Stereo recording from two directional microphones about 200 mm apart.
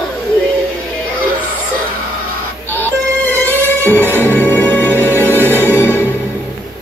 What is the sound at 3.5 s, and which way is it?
Music, 10° right (ahead or behind).